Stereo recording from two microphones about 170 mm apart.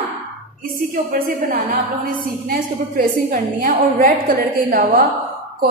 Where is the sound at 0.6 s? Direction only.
55° right (ahead or behind).